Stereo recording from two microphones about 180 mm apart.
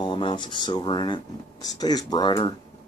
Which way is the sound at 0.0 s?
30° left (ahead or behind).